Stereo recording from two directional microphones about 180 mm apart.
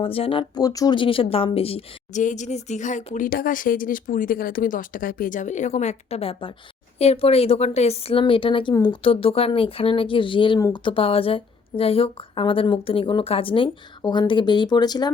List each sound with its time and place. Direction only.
0.0 s speech: 30° left (ahead or behind)